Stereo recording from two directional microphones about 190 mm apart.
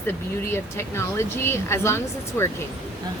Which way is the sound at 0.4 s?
15° left (ahead or behind).